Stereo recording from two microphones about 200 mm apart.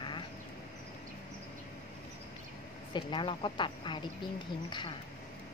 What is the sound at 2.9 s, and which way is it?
Speech, 25° left (ahead or behind).